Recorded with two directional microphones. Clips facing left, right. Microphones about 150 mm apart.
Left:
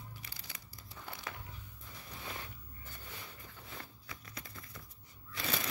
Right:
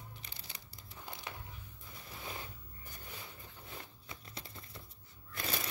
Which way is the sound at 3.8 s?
25° right (ahead or behind).